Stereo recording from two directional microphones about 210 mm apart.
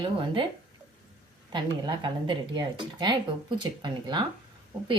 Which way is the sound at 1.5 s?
20° right (ahead or behind).